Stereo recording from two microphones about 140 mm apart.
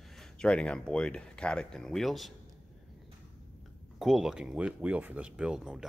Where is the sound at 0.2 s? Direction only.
5° left (ahead or behind).